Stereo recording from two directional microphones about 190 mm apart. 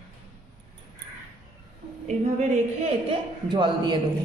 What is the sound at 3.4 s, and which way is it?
Speech, 25° right (ahead or behind).